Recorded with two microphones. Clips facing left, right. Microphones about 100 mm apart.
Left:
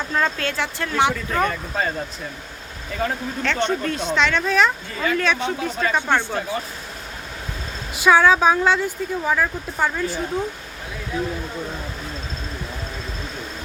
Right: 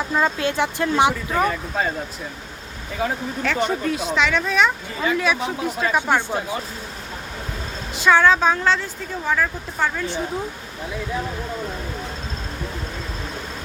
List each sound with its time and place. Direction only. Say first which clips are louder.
0.1 s speech: right 2 dB; 15° right (ahead or behind)
1.4 s speech: right 1 dB; 5° right (ahead or behind)
3.0 s speech: right 1 dB; 5° right (ahead or behind)
7.9 s speech: left 1 dB; 10° left (ahead or behind)